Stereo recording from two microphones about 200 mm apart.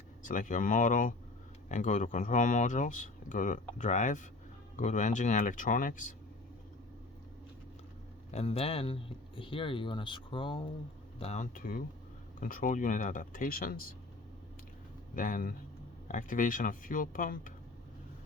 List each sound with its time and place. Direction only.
0.2 s speech: 40° left (ahead or behind)
8.3 s speech: 30° left (ahead or behind); by 13.8 s 45° left (ahead or behind)
15.1 s speech: 40° left (ahead or behind)